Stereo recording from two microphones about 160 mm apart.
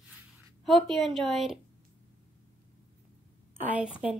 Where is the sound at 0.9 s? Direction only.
Centre (ahead or behind).